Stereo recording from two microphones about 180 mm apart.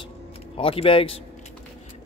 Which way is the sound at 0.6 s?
30° left (ahead or behind).